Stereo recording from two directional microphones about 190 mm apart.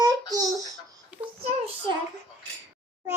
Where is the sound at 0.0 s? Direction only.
20° right (ahead or behind).